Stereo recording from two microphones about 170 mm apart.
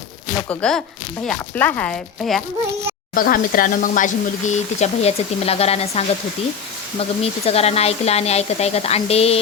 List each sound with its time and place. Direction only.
0.4 s speech: 5° left (ahead or behind)
3.2 s speech: 55° left (ahead or behind); by 6.1 s 40° left (ahead or behind)
7.2 s speech: 35° left (ahead or behind)